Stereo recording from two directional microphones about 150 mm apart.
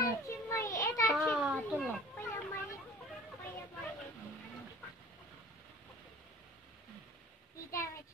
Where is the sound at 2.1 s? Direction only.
15° left (ahead or behind).